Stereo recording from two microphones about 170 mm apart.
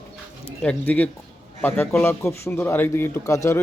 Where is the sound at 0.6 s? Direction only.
10° left (ahead or behind).